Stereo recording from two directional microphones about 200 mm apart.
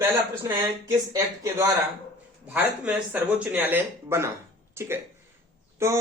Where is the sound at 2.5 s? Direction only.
5° right (ahead or behind).